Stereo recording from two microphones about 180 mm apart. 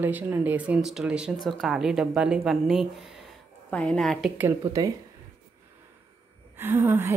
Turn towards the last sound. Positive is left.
turn(degrees=-10)  # may be behind; listen again after turning